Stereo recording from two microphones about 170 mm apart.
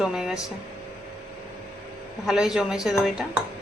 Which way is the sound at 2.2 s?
5° right (ahead or behind).